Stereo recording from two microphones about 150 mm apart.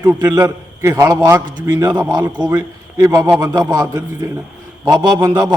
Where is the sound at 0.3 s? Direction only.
20° right (ahead or behind).